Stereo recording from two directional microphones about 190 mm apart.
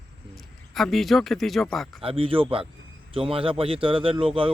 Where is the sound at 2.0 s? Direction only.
30° right (ahead or behind).